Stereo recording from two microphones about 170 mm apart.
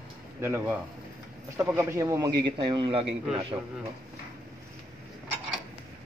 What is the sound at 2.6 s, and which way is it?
Speech, 30° right (ahead or behind).